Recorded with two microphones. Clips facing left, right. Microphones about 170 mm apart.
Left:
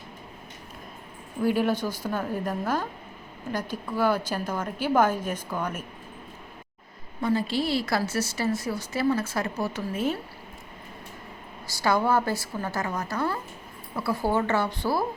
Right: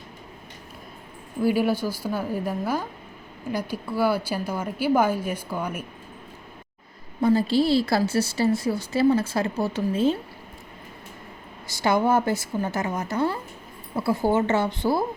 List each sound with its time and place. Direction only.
1.4 s a woman's voice: 5° right (ahead or behind)
7.2 s a woman's voice: 35° right (ahead or behind)
11.7 s a woman's voice: 25° right (ahead or behind)